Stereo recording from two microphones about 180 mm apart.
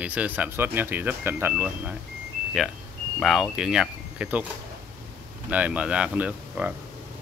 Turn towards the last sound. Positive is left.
turn(degrees=-10)  # may be behind; listen again after turning